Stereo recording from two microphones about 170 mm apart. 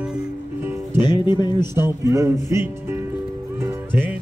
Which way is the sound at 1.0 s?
25° left (ahead or behind).